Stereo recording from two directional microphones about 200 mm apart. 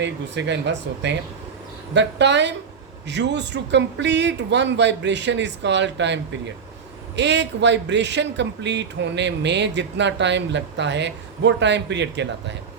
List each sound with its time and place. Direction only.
0.0 s a man's voice: 60° right (ahead or behind)